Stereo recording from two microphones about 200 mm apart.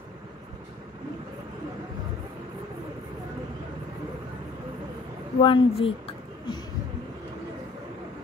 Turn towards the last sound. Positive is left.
turn(degrees=25)  # may be behind; listen again after turning